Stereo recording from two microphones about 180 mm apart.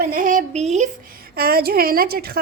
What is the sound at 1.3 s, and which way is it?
A woman's voice, 60° right (ahead or behind).